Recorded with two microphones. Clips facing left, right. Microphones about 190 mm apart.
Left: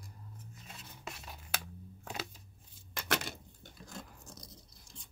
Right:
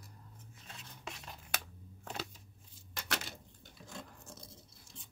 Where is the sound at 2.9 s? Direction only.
55° left (ahead or behind).